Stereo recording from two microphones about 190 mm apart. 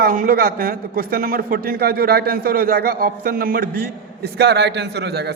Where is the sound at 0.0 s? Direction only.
45° right (ahead or behind).